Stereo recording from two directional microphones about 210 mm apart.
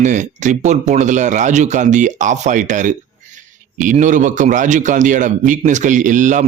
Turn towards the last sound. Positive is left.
turn(degrees=-35)  # may be behind; listen again after turning